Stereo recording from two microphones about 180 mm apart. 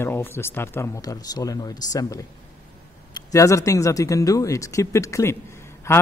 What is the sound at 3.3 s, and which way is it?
Speech, 15° left (ahead or behind).